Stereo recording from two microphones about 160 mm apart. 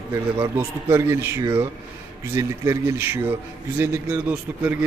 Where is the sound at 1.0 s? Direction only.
15° right (ahead or behind).